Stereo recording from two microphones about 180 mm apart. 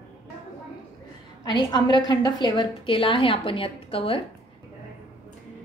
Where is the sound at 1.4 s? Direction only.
25° left (ahead or behind).